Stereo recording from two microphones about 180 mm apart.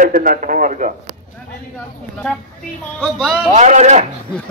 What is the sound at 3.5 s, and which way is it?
Speech, 40° right (ahead or behind).